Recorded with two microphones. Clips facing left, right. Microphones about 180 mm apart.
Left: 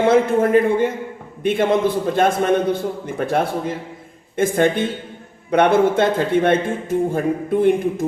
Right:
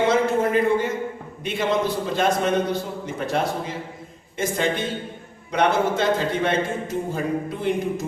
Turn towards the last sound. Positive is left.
turn(degrees=55)  # may be behind; listen again after turning